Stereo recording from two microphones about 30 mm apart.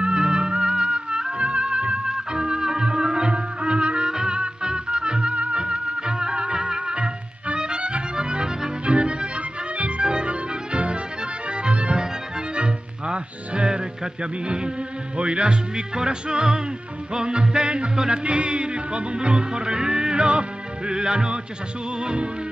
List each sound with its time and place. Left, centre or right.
0.0 s music: right
1.4 s music: right
4.1 s music: right
4.4 s music: right
5.3 s music: right
5.6 s music: right
15.1 s speech: right
17.1 s music: right
20.2 s music: right
22.0 s speech: right